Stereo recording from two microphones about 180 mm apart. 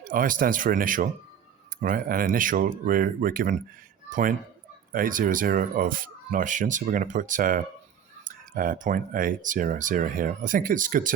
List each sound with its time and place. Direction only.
0.0 s speech: 50° right (ahead or behind)